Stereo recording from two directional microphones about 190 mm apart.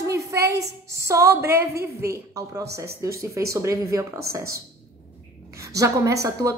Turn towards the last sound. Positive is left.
turn(degrees=-15)  # may be behind; listen again after turning